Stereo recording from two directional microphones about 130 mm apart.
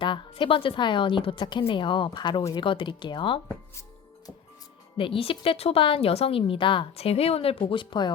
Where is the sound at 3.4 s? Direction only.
25° left (ahead or behind).